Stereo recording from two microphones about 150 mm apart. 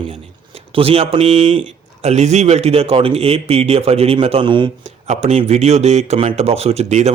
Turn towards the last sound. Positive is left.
turn(degrees=-45)  # may be behind; listen again after turning